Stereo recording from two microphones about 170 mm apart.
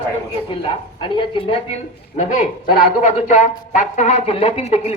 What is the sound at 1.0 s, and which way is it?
A woman's voice, 30° left (ahead or behind).